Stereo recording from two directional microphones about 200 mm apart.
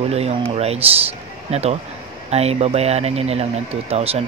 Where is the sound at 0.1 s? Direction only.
30° right (ahead or behind).